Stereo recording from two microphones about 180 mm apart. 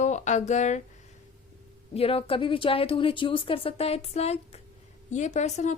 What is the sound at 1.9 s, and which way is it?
A woman's voice, 35° left (ahead or behind).